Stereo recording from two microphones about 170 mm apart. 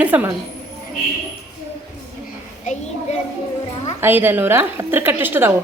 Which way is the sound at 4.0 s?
10° right (ahead or behind).